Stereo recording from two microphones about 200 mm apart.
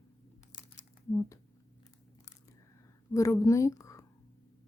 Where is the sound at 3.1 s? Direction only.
15° left (ahead or behind).